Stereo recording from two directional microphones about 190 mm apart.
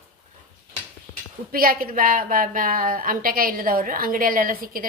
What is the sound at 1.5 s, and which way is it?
A woman's voice, 50° right (ahead or behind).